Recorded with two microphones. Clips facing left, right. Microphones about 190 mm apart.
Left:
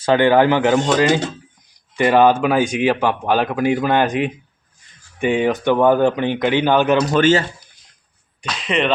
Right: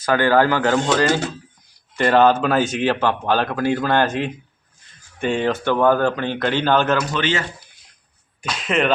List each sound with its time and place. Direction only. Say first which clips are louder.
0.0 s speech: left 3 dB; 25° left (ahead or behind)
7.0 s a man's voice: left 8 dB; 45° left (ahead or behind)
8.4 s speech: even; 5° right (ahead or behind)